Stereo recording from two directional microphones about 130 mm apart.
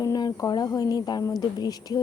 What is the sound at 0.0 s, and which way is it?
A woman's voice, 30° left (ahead or behind).